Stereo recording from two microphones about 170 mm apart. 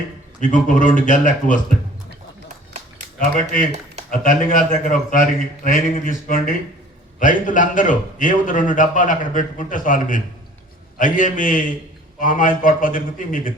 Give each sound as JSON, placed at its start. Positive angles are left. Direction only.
{"t": 0.5, "sound": "a man's voice", "side_deg": 50}
{"t": 3.3, "sound": "a man's voice", "side_deg": 55}